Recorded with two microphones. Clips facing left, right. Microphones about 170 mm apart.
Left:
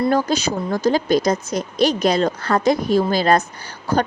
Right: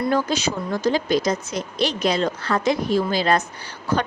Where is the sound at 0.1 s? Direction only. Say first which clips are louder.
Left 3 dB; 40° left (ahead or behind).